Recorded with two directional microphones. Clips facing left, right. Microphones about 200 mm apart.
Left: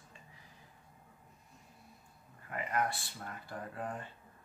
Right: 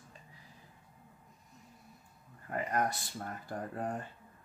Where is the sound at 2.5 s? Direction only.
40° right (ahead or behind).